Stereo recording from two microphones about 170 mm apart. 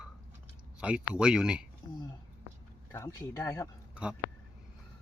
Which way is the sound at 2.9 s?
15° left (ahead or behind).